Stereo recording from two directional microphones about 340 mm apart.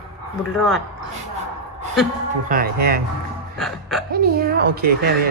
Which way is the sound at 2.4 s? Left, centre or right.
Right.